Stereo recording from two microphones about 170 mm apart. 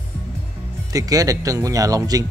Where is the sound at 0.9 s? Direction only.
20° right (ahead or behind).